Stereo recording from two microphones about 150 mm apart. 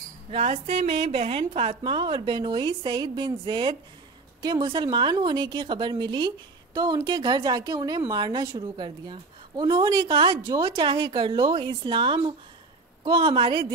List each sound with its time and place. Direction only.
0.3 s a woman's voice: 45° right (ahead or behind)
10.4 s a woman's voice: 25° right (ahead or behind)